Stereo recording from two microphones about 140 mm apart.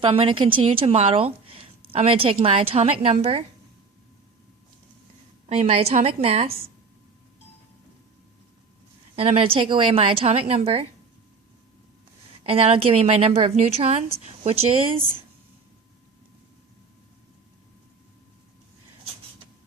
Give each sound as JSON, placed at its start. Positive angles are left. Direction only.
{"t": 0.0, "sound": "a woman's voice", "side_deg": -40}
{"t": 5.5, "sound": "a woman's voice", "side_deg": -45}
{"t": 9.1, "sound": "a woman's voice", "side_deg": -45}
{"t": 12.4, "sound": "a woman's voice", "side_deg": -45}